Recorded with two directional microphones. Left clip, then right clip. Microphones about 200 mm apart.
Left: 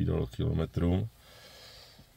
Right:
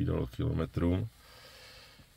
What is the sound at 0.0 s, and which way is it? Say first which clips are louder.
Speech: left 1 dB; 5° left (ahead or behind).